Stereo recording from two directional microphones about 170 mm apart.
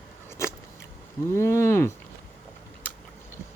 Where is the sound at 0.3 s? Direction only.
15° left (ahead or behind).